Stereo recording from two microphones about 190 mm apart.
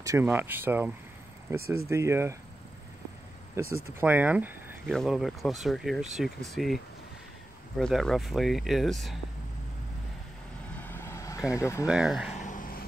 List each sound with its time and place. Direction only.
0.0 s speech: 15° right (ahead or behind)
3.7 s speech: 10° right (ahead or behind)
10.8 s vehicle: 10° left (ahead or behind)
11.9 s speech: 5° right (ahead or behind)
12.4 s a sound: 40° left (ahead or behind)